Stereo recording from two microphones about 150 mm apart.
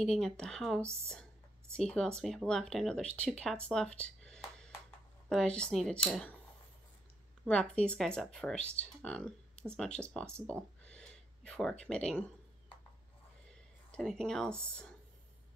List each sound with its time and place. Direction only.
0.0 s speech: 5° left (ahead or behind)
1.9 s speech: 5° left (ahead or behind)
3.6 s a sound: 5° left (ahead or behind)
5.3 s speech: 5° left (ahead or behind)
7.4 s speech: 5° left (ahead or behind)
10.4 s a sound: 10° left (ahead or behind)
11.8 s speech: 5° left (ahead or behind)
13.9 s speech: 5° left (ahead or behind)